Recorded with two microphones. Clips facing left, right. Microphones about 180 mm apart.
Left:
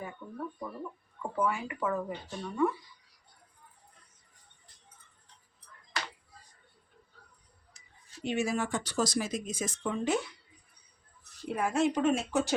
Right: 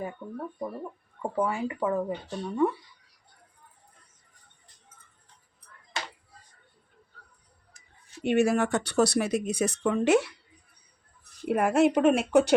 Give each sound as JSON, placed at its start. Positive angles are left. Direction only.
{"t": 0.0, "sound": "speech", "side_deg": -35}
{"t": 8.2, "sound": "speech", "side_deg": -65}
{"t": 11.4, "sound": "speech", "side_deg": -65}